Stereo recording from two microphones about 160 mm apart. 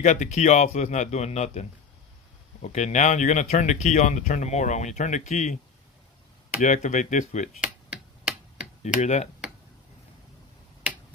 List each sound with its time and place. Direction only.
0.0 s speech: 50° left (ahead or behind)
6.6 s speech: 50° left (ahead or behind)
8.8 s speech: 45° left (ahead or behind)